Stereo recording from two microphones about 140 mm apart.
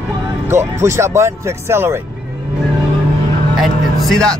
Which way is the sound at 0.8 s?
20° right (ahead or behind).